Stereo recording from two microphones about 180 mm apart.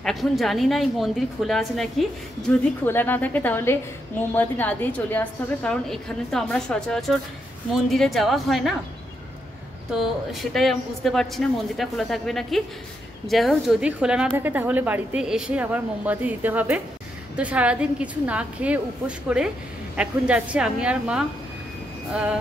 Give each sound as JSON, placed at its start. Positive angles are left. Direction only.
{"t": 0.0, "sound": "a woman's voice", "side_deg": 0}
{"t": 9.8, "sound": "a woman's voice", "side_deg": 0}